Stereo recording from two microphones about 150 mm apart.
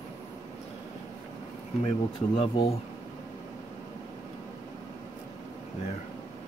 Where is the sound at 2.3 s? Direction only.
40° left (ahead or behind).